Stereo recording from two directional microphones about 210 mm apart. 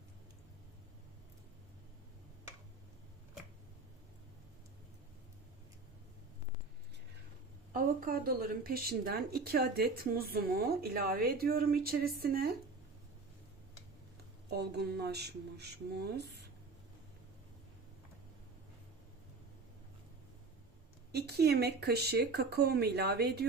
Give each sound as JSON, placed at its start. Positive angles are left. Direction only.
{"t": 7.7, "sound": "a woman's voice", "side_deg": -40}
{"t": 14.5, "sound": "a woman's voice", "side_deg": -50}
{"t": 21.1, "sound": "a woman's voice", "side_deg": -50}